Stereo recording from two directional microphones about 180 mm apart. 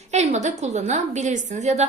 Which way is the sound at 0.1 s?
40° right (ahead or behind).